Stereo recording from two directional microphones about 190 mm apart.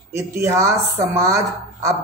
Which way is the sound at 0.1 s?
15° right (ahead or behind).